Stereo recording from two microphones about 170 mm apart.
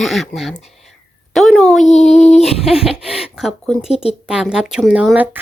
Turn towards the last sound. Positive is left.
turn(degrees=-10)  # may be behind; listen again after turning